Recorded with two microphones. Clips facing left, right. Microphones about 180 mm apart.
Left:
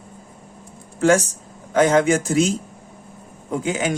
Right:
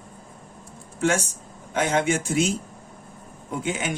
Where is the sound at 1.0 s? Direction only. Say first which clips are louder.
Left 7 dB; 40° left (ahead or behind).